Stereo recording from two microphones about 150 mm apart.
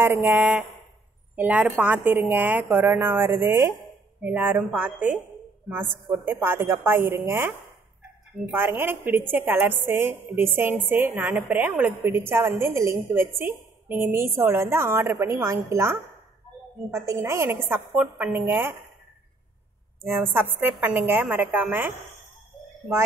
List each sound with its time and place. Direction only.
0.0 s a woman's voice: 15° right (ahead or behind)
6.2 s a woman's voice: 15° right (ahead or behind)
8.5 s a woman's voice: 15° right (ahead or behind)
20.0 s a woman's voice: 15° right (ahead or behind)